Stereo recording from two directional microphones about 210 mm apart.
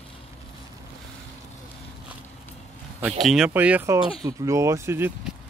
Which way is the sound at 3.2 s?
Centre (ahead or behind).